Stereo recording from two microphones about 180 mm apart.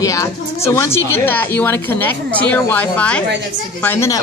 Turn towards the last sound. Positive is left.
turn(degrees=15)  # may be behind; listen again after turning